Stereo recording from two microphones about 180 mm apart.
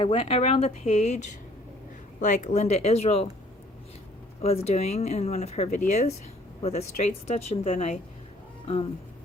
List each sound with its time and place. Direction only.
0.0 s speech: 30° left (ahead or behind)
4.4 s speech: 35° left (ahead or behind)